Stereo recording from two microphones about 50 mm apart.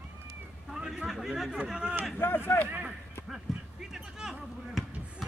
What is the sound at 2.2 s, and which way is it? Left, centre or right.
Speech, left.